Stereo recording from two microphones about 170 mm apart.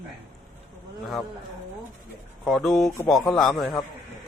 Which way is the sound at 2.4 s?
Centre (ahead or behind).